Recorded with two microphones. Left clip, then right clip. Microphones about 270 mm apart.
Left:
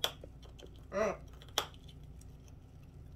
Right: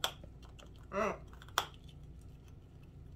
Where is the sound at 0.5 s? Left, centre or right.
Centre.